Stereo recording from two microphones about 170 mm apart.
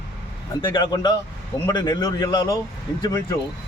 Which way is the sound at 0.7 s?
25° left (ahead or behind).